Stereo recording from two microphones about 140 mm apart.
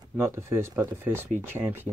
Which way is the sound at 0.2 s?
20° right (ahead or behind).